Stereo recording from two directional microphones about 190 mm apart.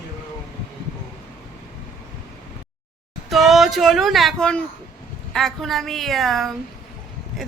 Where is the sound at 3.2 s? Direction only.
Centre (ahead or behind).